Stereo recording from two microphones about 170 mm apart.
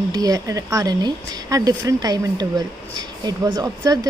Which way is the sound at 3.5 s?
20° right (ahead or behind).